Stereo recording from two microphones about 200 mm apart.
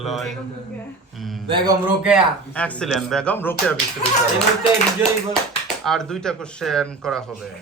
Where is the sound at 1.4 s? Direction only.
25° right (ahead or behind).